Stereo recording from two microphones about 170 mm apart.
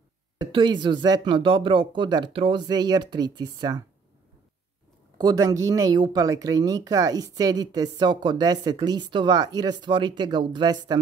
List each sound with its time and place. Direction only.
0.4 s speech: 30° right (ahead or behind)
5.1 s speech: 20° right (ahead or behind)